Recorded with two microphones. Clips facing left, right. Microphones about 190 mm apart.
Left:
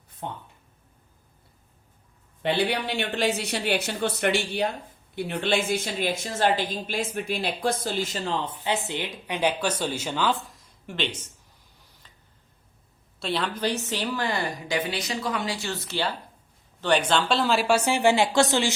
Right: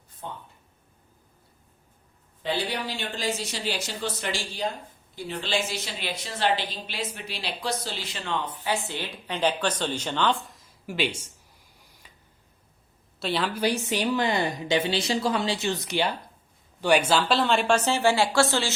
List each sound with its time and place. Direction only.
0.2 s a woman's voice: 65° left (ahead or behind)
2.4 s a woman's voice: 65° left (ahead or behind); by 11.3 s 10° right (ahead or behind)
11.8 s a sound: 10° right (ahead or behind)
13.1 s a woman's voice: centre (ahead or behind); by 18.7 s 15° left (ahead or behind)